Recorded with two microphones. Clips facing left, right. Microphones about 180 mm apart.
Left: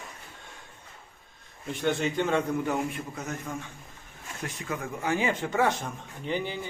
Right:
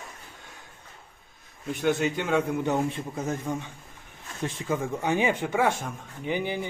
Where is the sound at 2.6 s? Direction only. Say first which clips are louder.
Right 3 dB; 30° right (ahead or behind).